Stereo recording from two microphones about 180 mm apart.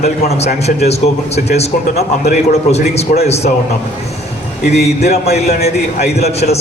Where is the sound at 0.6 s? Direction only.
35° left (ahead or behind).